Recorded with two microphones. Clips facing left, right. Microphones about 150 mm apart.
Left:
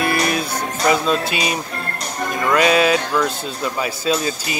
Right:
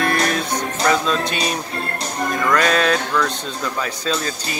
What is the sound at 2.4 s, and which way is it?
Speech, 10° left (ahead or behind).